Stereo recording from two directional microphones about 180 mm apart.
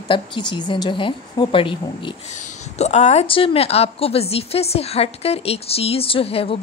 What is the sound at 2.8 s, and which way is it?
A woman's voice, 40° left (ahead or behind).